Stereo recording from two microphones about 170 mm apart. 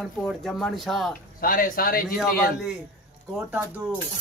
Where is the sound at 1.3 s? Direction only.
55° left (ahead or behind).